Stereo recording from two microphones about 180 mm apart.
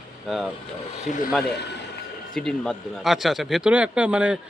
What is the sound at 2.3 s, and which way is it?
Speech, 5° left (ahead or behind).